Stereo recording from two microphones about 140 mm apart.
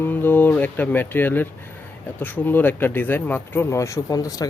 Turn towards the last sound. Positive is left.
turn(degrees=25)  # may be behind; listen again after turning